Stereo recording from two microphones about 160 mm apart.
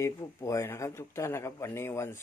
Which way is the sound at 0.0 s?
20° left (ahead or behind).